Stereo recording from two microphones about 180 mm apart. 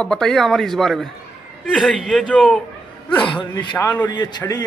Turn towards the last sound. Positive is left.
turn(degrees=20)  # may be behind; listen again after turning